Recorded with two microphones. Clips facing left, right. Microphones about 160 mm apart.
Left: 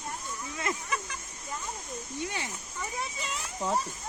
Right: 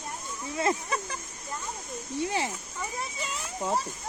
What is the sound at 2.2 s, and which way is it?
Speech, 30° right (ahead or behind).